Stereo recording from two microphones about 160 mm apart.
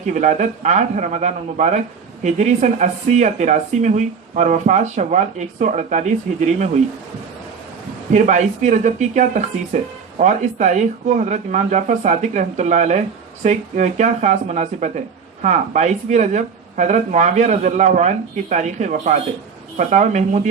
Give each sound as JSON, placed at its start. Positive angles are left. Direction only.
{"t": 0.0, "sound": "speech", "side_deg": -50}
{"t": 8.1, "sound": "speech", "side_deg": -45}